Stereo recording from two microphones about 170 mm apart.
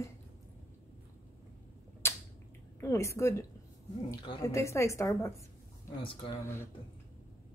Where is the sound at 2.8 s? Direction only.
15° left (ahead or behind).